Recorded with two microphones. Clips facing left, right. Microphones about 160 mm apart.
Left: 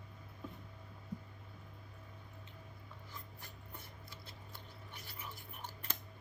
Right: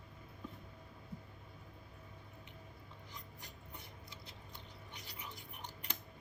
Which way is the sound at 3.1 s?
15° right (ahead or behind).